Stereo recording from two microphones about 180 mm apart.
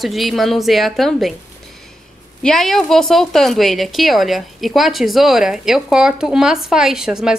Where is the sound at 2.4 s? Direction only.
Centre (ahead or behind).